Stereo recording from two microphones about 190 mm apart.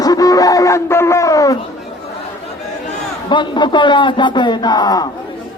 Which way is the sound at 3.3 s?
25° left (ahead or behind).